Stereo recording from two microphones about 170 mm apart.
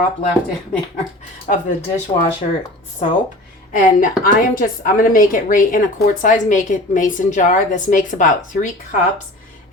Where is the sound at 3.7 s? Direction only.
55° left (ahead or behind).